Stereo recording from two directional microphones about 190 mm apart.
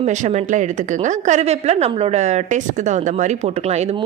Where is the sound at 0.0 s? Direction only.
40° right (ahead or behind).